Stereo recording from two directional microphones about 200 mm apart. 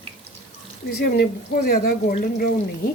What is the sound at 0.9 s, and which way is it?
Speech, 55° left (ahead or behind).